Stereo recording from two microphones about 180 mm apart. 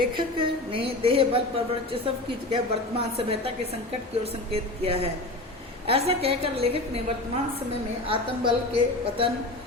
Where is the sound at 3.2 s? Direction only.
30° right (ahead or behind).